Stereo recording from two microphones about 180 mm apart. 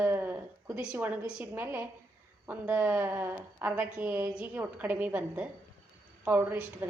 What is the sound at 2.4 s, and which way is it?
A woman's voice, 10° right (ahead or behind).